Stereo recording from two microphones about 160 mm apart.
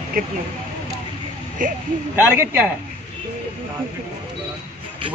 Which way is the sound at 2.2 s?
15° right (ahead or behind).